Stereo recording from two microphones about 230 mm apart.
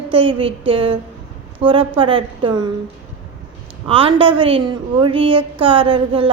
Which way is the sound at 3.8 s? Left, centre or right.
Right.